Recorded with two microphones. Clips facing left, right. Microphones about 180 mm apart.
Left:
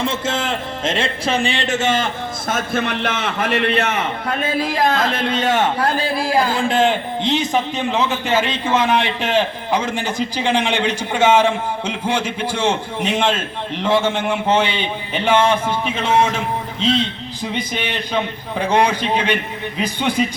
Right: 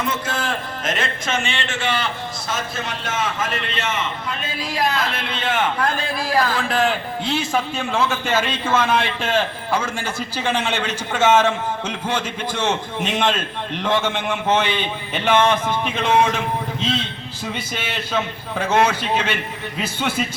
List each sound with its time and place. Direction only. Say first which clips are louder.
0.0 s a man's voice: left 3 dB; 25° left (ahead or behind); by 16.0 s 10° left (ahead or behind)
17.6 s a man's voice: left 4 dB; 15° left (ahead or behind)